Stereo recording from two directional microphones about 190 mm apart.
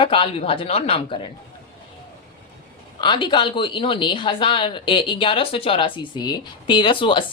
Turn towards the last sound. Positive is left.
turn(degrees=25)  # may be behind; listen again after turning